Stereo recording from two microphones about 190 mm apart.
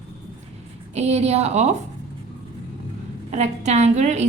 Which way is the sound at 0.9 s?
35° right (ahead or behind).